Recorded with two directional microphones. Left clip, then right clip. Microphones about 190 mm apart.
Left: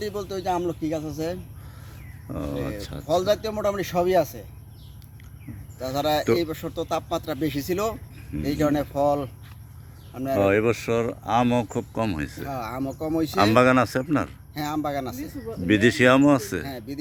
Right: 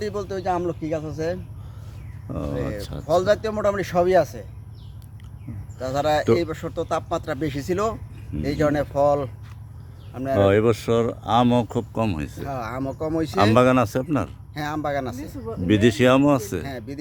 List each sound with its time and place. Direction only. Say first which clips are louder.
0.0 s speech: right 2 dB; centre (ahead or behind)
3.2 s speech: right 3 dB; 5° left (ahead or behind)
5.8 s speech: right 2 dB; 5° left (ahead or behind)
10.5 s speech: right 3 dB; 10° right (ahead or behind)